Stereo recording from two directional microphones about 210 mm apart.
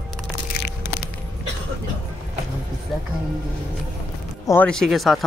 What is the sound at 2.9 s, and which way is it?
Music, centre (ahead or behind).